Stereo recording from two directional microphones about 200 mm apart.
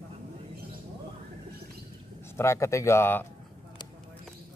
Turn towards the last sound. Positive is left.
turn(degrees=10)  # may be behind; listen again after turning